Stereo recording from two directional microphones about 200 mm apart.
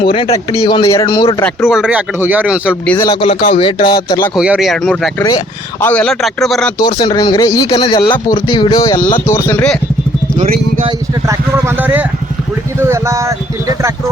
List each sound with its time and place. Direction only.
0.1 s speech: 25° left (ahead or behind)
1.6 s speech: 5° right (ahead or behind)
2.8 s speech: 10° left (ahead or behind)
3.1 s speech: 25° left (ahead or behind)
4.4 s speech: 5° right (ahead or behind)
6.7 s speech: 20° left (ahead or behind)
7.8 s speech: 30° left (ahead or behind); by 9.7 s 10° left (ahead or behind)
10.8 s speech: 15° right (ahead or behind)